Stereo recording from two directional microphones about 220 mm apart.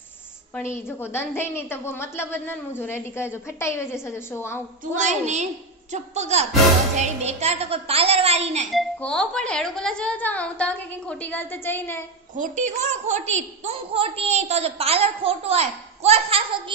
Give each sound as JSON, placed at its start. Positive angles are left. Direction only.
{"t": 0.8, "sound": "a woman's voice", "side_deg": 10}
{"t": 4.9, "sound": "a woman's voice", "side_deg": -30}
{"t": 8.6, "sound": "a woman's voice", "side_deg": 0}
{"t": 12.6, "sound": "a woman's voice", "side_deg": -30}